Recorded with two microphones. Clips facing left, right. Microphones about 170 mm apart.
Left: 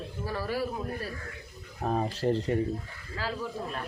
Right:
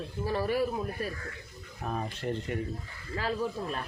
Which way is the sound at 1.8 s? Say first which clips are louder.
Left 6 dB; 35° left (ahead or behind).